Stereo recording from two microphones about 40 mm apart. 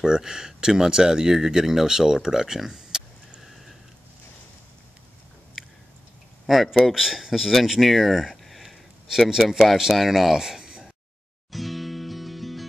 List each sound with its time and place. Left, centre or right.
0.0 s speech: centre
6.4 s speech: centre
10.3 s a sound: centre
11.5 s music: centre